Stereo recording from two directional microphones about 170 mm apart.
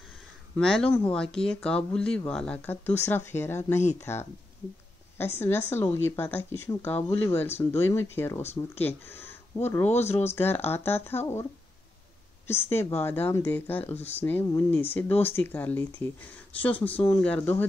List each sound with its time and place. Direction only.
0.6 s speech: 5° left (ahead or behind)
3.7 s speech: 40° left (ahead or behind)
4.0 s speech: 15° left (ahead or behind)
7.4 s speech: 40° left (ahead or behind)
7.9 s speech: 15° left (ahead or behind)
9.8 s speech: 40° left (ahead or behind)
10.2 s speech: 15° left (ahead or behind)
12.4 s speech: 15° left (ahead or behind)